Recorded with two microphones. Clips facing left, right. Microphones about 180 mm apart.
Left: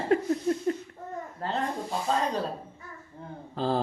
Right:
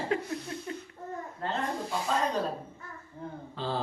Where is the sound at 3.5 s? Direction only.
45° left (ahead or behind).